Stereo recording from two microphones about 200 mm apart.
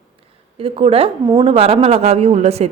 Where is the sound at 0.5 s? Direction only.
30° right (ahead or behind).